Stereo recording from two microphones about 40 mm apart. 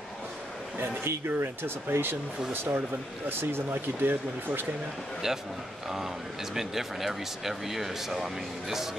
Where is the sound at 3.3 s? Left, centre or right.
Right.